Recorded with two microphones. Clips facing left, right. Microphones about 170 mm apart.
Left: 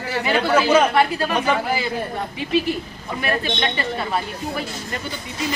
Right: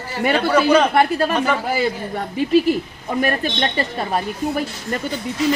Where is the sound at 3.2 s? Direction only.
45° right (ahead or behind).